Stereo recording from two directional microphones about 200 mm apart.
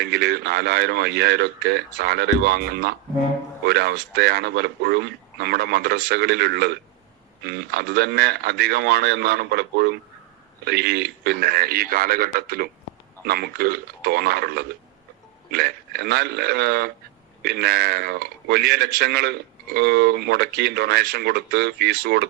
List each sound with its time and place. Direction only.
0.0 s a man's voice: 55° right (ahead or behind)